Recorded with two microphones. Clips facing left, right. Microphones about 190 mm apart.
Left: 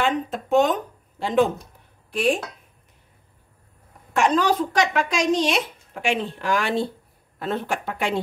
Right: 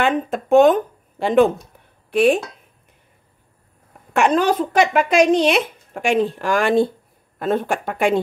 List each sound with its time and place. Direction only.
0.0 s speech: 55° right (ahead or behind)
4.1 s speech: 55° right (ahead or behind)